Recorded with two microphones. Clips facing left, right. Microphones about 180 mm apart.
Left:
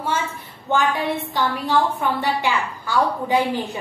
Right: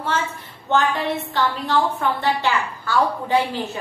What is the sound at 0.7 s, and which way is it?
A woman's voice, 10° left (ahead or behind).